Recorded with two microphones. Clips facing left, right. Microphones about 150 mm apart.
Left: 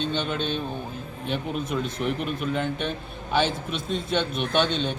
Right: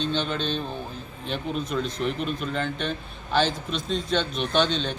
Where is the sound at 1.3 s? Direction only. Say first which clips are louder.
Even; 10° left (ahead or behind).